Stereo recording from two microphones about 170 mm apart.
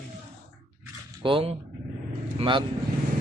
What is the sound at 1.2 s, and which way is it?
Speech, 30° right (ahead or behind).